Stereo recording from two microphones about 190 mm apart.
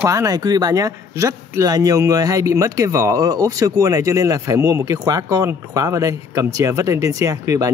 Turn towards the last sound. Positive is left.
turn(degrees=-15)  # may be behind; listen again after turning